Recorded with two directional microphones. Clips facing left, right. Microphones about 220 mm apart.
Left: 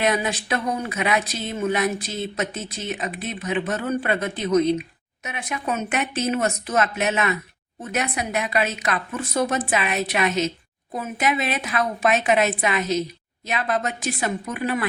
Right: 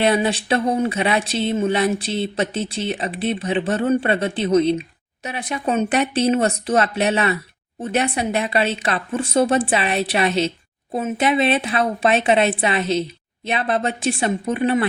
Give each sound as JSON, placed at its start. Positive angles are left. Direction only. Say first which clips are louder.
{"t": 0.0, "sound": "speech", "louder": "right 5 dB", "side_deg": -30}